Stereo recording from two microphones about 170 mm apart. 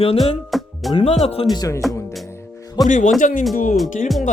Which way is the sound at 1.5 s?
20° left (ahead or behind).